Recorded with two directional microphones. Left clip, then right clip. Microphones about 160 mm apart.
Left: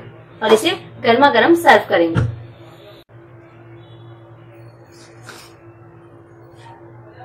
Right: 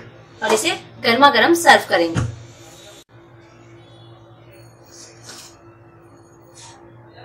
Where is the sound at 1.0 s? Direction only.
5° left (ahead or behind).